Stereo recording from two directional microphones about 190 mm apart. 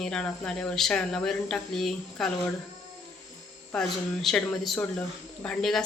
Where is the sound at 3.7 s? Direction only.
5° left (ahead or behind).